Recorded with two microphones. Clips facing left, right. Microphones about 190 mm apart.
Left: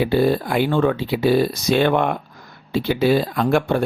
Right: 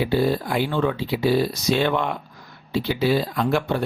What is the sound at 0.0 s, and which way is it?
Speech, 55° left (ahead or behind).